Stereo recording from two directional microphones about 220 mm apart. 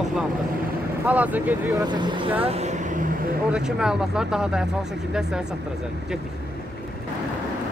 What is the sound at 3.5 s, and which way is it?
Speech, 5° right (ahead or behind).